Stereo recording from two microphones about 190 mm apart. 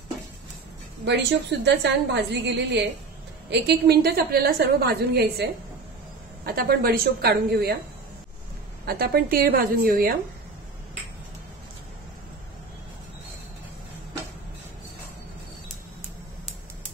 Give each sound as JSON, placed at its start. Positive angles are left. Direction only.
{"t": 1.6, "sound": "a woman's voice", "side_deg": -65}
{"t": 8.8, "sound": "a woman's voice", "side_deg": -55}